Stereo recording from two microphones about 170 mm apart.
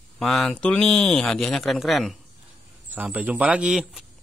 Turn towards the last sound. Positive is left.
turn(degrees=-5)  # may be behind; listen again after turning